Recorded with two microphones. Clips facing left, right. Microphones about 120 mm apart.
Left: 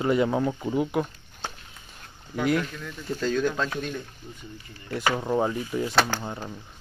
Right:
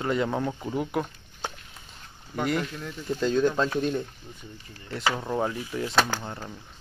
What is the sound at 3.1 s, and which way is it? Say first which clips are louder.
Speech: right 2 dB; 25° right (ahead or behind).